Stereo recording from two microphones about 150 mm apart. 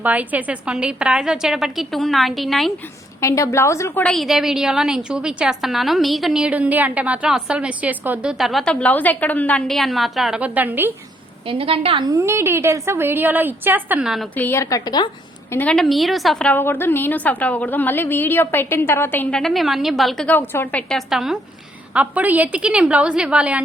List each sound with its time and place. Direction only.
0.0 s a woman's voice: 10° right (ahead or behind)
3.2 s a woman's voice: 20° left (ahead or behind)
4.1 s a woman's voice: centre (ahead or behind)
11.4 s a woman's voice: 40° right (ahead or behind)
12.1 s a woman's voice: 20° right (ahead or behind)
14.3 s a woman's voice: 15° left (ahead or behind)
15.5 s a woman's voice: 5° left (ahead or behind)
20.9 s a woman's voice: centre (ahead or behind)